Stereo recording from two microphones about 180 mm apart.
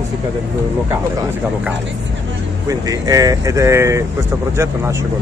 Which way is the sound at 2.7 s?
20° right (ahead or behind).